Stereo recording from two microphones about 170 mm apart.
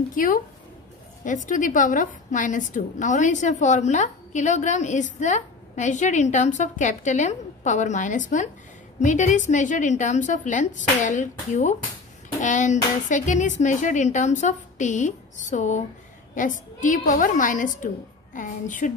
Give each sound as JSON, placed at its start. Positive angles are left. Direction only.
{"t": 0.1, "sound": "a woman's voice", "side_deg": 50}